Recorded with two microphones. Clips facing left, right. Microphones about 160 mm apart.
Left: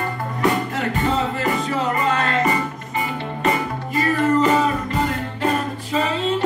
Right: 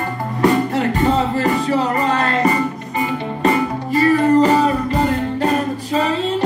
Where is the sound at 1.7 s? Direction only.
35° right (ahead or behind).